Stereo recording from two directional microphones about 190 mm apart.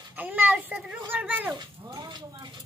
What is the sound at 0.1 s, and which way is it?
Speech, 10° right (ahead or behind).